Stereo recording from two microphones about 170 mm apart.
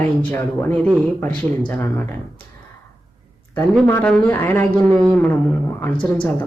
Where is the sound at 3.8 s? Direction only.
10° left (ahead or behind).